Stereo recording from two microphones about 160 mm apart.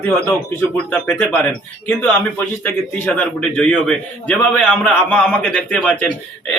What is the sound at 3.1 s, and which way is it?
A man's voice, 5° left (ahead or behind).